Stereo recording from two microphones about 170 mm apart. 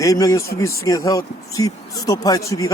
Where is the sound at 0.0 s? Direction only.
20° left (ahead or behind).